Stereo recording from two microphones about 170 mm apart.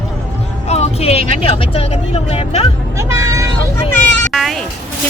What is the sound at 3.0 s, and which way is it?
Speech, 15° right (ahead or behind).